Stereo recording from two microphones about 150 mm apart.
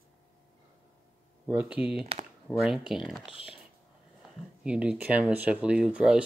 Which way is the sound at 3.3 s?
40° left (ahead or behind).